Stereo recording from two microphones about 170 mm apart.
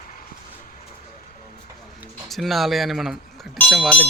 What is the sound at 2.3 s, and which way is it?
Speech, centre (ahead or behind).